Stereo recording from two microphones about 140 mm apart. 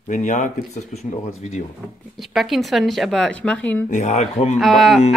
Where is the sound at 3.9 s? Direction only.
55° left (ahead or behind).